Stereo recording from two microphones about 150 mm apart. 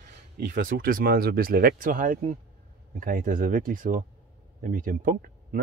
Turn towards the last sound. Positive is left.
turn(degrees=-70)  # may be behind; listen again after turning